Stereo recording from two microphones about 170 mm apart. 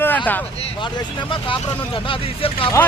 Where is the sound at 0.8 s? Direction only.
30° left (ahead or behind).